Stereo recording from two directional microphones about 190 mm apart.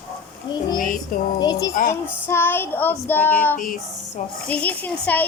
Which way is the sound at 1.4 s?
20° left (ahead or behind).